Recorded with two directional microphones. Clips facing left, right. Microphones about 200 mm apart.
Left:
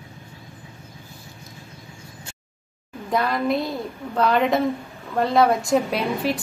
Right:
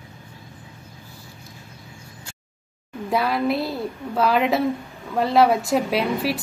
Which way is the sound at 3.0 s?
5° right (ahead or behind).